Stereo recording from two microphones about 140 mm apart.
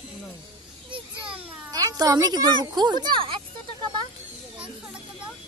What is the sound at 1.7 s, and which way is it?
Speech, 25° right (ahead or behind).